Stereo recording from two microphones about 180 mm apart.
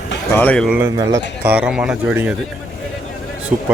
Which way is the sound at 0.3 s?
5° left (ahead or behind).